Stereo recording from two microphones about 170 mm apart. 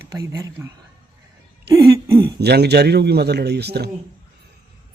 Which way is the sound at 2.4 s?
75° right (ahead or behind).